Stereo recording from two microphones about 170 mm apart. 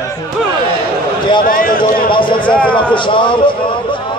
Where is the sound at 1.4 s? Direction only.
55° left (ahead or behind).